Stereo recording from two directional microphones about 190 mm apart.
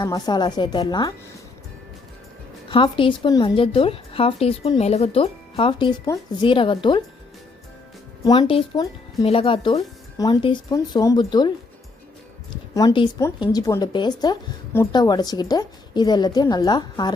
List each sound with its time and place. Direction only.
0.0 s a woman's voice: 20° left (ahead or behind)
2.6 s a woman's voice: 25° left (ahead or behind)
8.2 s a woman's voice: 25° left (ahead or behind)
12.7 s a woman's voice: 20° left (ahead or behind)